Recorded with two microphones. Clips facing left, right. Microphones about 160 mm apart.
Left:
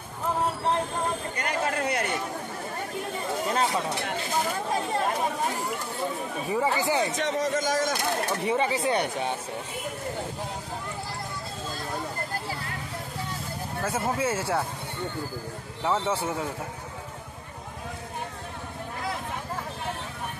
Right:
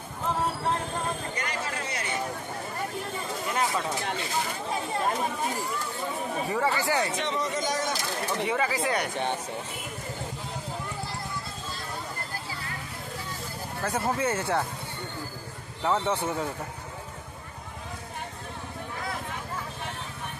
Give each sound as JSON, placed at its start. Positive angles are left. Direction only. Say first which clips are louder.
{"t": 1.4, "sound": "a sound", "louder": "left 5 dB", "side_deg": 55}
{"t": 3.5, "sound": "a sound", "louder": "left 1 dB", "side_deg": 30}
{"t": 6.5, "sound": "speech", "louder": "left 2 dB", "side_deg": 15}
{"t": 7.2, "sound": "speech", "louder": "left 3 dB", "side_deg": 45}
{"t": 8.5, "sound": "speech", "louder": "left 4 dB", "side_deg": 25}
{"t": 13.8, "sound": "speech", "louder": "even", "side_deg": 5}
{"t": 15.8, "sound": "speech", "louder": "even", "side_deg": 10}